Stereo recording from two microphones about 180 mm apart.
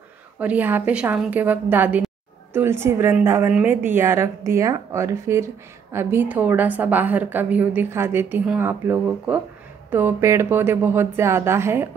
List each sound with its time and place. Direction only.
0.4 s a woman's voice: 10° right (ahead or behind)